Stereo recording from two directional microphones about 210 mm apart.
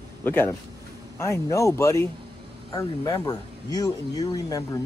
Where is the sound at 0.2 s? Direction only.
10° left (ahead or behind).